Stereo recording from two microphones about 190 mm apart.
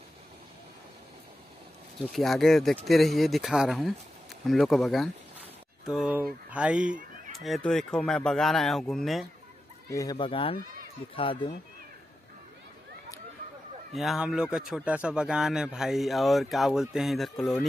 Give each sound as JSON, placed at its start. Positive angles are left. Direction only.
{"t": 2.0, "sound": "speech", "side_deg": 0}
{"t": 9.8, "sound": "speech", "side_deg": 20}
{"t": 13.9, "sound": "speech", "side_deg": 0}